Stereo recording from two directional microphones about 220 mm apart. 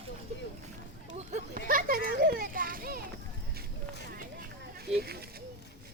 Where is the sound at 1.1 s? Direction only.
35° right (ahead or behind).